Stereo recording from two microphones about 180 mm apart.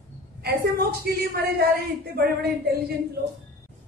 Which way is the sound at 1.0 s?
60° right (ahead or behind).